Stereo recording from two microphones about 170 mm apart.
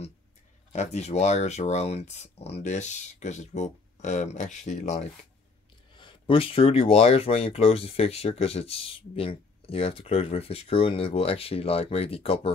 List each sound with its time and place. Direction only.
0.7 s speech: 40° left (ahead or behind)
5.9 s speech: 30° left (ahead or behind)